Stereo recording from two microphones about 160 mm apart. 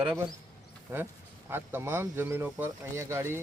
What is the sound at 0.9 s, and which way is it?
Speech, 15° right (ahead or behind).